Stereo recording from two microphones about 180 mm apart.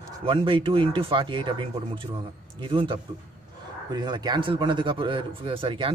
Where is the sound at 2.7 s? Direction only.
30° right (ahead or behind).